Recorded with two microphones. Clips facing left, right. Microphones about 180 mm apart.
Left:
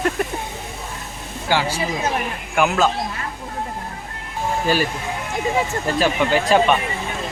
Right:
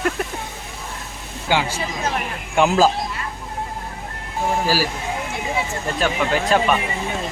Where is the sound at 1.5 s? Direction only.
15° right (ahead or behind).